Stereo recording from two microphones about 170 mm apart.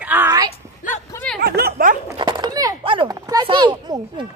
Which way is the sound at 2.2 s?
25° right (ahead or behind).